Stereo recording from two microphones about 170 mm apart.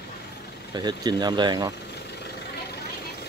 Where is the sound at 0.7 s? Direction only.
25° right (ahead or behind).